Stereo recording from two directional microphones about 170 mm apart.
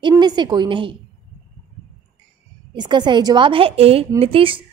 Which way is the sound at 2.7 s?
25° right (ahead or behind).